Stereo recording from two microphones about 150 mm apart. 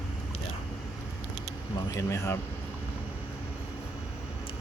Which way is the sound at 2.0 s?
20° left (ahead or behind).